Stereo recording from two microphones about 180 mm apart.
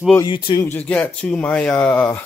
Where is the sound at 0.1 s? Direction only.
20° left (ahead or behind).